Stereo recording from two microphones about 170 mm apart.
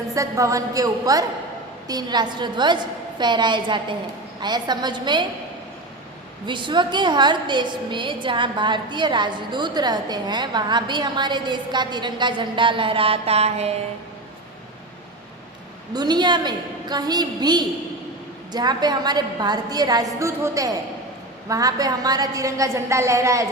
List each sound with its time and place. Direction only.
0.1 s a woman's voice: 20° right (ahead or behind)
6.4 s a woman's voice: 25° right (ahead or behind)
15.9 s a woman's voice: 25° right (ahead or behind)